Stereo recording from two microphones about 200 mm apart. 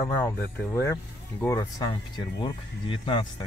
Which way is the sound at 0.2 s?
10° left (ahead or behind).